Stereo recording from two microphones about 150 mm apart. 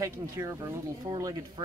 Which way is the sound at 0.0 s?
20° right (ahead or behind).